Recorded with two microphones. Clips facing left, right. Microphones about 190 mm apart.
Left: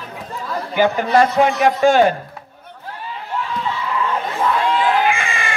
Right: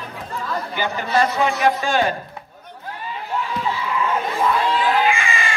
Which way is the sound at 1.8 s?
50° left (ahead or behind).